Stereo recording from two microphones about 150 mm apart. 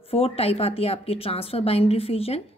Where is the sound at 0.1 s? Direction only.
40° left (ahead or behind).